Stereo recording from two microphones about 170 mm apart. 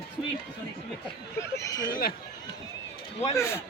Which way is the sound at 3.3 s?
15° left (ahead or behind).